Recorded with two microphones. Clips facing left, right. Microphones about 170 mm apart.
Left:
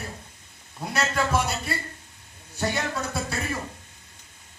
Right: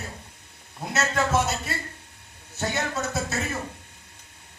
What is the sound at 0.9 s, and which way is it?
Speech, 25° right (ahead or behind).